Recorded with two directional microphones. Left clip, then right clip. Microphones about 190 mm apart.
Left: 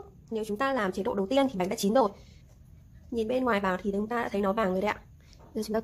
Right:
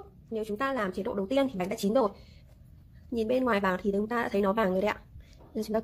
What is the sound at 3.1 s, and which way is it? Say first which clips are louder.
Speech: even; 15° right (ahead or behind).